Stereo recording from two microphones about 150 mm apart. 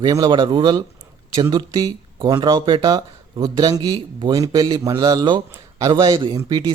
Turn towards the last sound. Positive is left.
turn(degrees=-25)  # may be behind; listen again after turning